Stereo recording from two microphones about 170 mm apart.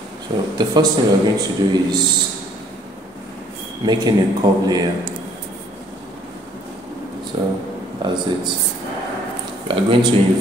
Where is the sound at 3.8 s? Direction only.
25° right (ahead or behind).